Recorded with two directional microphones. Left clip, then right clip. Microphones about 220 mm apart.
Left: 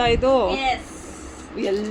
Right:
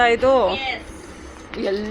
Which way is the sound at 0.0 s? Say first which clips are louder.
Right 3 dB; centre (ahead or behind).